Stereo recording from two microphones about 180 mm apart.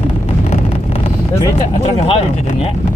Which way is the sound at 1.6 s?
35° left (ahead or behind).